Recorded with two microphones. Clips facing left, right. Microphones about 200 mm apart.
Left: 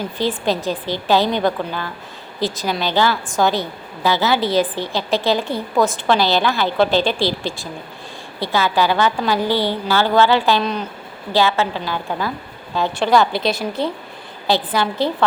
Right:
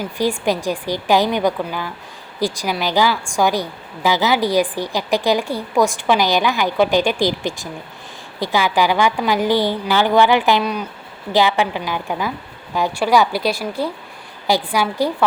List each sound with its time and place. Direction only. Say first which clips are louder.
0.0 s a woman's voice: right 1 dB; 15° right (ahead or behind)